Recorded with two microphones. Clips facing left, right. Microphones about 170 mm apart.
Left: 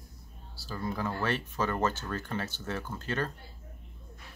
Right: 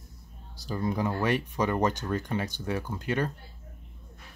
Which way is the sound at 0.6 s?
20° right (ahead or behind).